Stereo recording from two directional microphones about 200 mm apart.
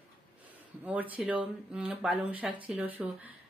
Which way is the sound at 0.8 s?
5° right (ahead or behind).